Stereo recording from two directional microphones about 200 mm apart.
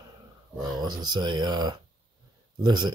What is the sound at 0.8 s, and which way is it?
Speech, 20° right (ahead or behind).